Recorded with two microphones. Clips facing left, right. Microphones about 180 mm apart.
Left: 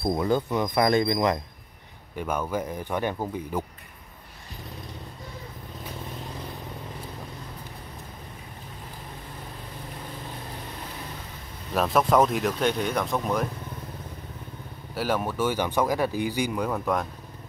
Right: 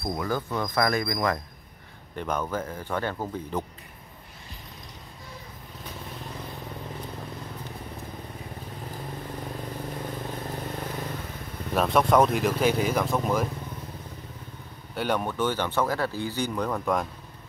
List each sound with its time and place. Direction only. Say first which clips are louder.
0.0 s speech: left 5 dB; 25° left (ahead or behind)
2.1 s speech: left 1 dB; 10° left (ahead or behind)
11.7 s speech: even; centre (ahead or behind)
15.0 s speech: even; centre (ahead or behind)